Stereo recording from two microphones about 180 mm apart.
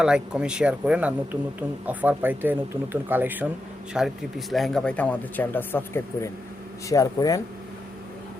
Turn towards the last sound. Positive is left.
turn(degrees=20)  # may be behind; listen again after turning